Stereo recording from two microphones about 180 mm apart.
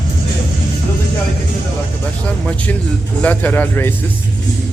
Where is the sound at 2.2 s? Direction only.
5° left (ahead or behind).